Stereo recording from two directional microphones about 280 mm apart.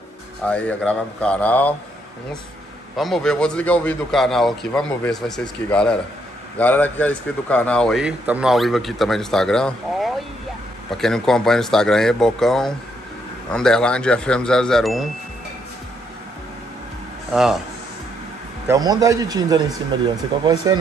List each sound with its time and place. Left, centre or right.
0.5 s a man's voice: centre
3.0 s a man's voice: centre
17.3 s speech: centre
18.7 s speech: centre